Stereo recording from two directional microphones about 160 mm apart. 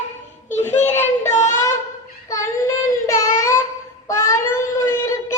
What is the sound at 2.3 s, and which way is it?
Child singing, 20° left (ahead or behind).